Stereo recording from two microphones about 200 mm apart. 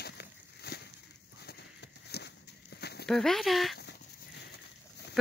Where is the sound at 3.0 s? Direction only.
Centre (ahead or behind).